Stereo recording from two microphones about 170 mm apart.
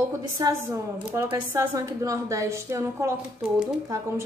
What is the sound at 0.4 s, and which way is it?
A woman's voice, 20° right (ahead or behind).